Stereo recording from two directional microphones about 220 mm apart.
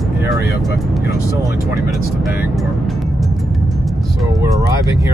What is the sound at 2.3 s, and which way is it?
Music, centre (ahead or behind).